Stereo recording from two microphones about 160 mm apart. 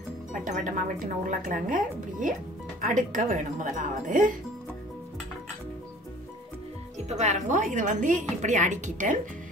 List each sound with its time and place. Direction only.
0.3 s a woman's voice: 55° right (ahead or behind)
7.1 s a woman's voice: 45° right (ahead or behind)